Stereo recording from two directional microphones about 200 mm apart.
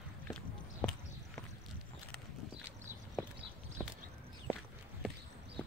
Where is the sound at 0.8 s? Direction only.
5° left (ahead or behind).